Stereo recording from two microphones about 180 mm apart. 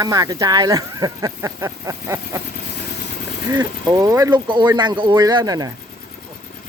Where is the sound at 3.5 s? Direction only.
20° right (ahead or behind).